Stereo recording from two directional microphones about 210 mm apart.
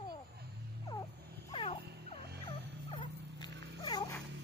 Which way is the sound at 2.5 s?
25° left (ahead or behind).